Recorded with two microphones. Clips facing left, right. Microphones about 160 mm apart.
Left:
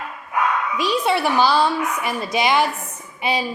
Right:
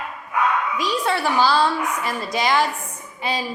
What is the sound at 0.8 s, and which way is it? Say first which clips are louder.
A woman's voice: left 3 dB; 20° left (ahead or behind).